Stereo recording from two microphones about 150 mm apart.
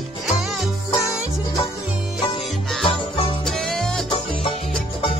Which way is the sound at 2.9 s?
35° left (ahead or behind).